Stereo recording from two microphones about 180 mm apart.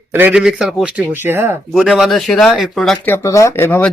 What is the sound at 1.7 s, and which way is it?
A man's voice, centre (ahead or behind).